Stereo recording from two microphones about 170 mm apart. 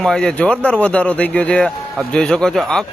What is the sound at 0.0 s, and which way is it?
A man's voice, 5° left (ahead or behind).